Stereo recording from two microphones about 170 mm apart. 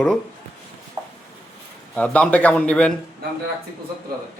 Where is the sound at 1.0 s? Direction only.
20° right (ahead or behind).